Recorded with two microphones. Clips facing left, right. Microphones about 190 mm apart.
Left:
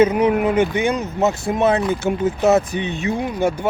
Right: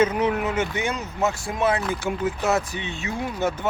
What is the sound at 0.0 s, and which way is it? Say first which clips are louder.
Speech: left 6 dB; 10° left (ahead or behind).